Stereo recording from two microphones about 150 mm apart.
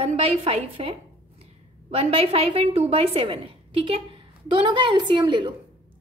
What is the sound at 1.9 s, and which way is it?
A woman's voice, 40° right (ahead or behind).